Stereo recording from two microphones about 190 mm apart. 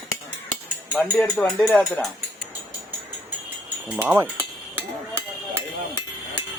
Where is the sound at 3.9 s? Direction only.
10° right (ahead or behind).